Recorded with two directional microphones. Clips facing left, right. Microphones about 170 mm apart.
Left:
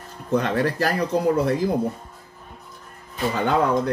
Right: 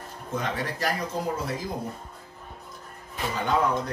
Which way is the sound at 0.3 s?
65° left (ahead or behind).